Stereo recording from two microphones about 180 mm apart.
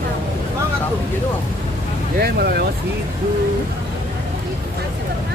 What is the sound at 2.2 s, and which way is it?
Vehicle, 60° right (ahead or behind).